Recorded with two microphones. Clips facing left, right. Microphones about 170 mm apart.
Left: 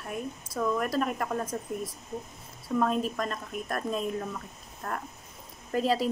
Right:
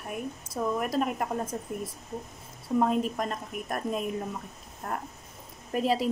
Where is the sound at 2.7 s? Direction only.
15° right (ahead or behind).